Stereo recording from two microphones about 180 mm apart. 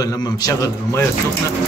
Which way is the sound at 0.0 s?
20° left (ahead or behind).